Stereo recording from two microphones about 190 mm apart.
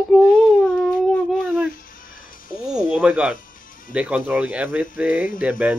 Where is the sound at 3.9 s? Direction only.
5° right (ahead or behind).